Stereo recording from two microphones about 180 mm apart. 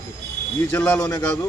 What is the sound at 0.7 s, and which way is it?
Speech, 10° left (ahead or behind).